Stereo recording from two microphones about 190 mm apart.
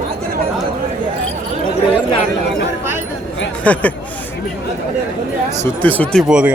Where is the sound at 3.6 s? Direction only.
5° left (ahead or behind).